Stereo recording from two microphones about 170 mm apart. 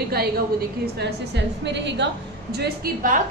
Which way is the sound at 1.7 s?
90° right.